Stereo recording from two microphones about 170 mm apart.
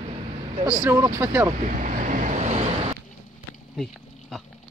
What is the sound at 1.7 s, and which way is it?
Vehicle, 45° right (ahead or behind).